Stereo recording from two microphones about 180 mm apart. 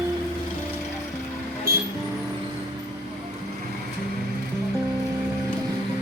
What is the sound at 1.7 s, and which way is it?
Music, 60° right (ahead or behind).